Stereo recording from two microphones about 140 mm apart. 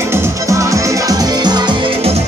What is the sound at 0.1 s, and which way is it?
Music, 20° right (ahead or behind).